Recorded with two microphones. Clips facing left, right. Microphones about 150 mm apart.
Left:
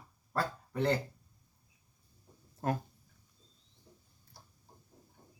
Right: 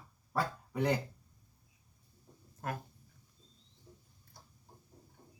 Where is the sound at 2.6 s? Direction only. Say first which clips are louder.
Left 6 dB; 30° left (ahead or behind).